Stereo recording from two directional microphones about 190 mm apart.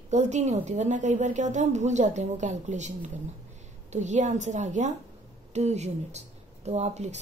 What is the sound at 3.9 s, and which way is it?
A woman's voice, 40° right (ahead or behind).